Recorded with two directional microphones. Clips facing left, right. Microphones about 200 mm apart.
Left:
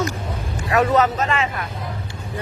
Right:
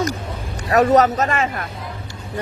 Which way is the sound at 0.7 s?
40° right (ahead or behind).